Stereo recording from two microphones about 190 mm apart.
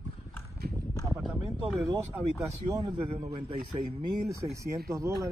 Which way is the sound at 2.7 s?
20° right (ahead or behind).